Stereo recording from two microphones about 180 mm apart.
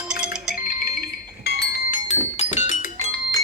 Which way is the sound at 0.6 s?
55° left (ahead or behind).